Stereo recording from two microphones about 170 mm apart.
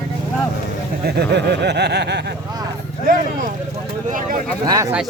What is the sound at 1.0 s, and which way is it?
Snicker, 70° right (ahead or behind).